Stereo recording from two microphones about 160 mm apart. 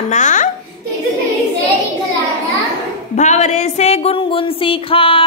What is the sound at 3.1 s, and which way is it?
A woman's voice, 45° left (ahead or behind).